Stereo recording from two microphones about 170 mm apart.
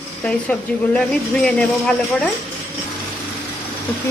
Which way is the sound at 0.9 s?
5° left (ahead or behind).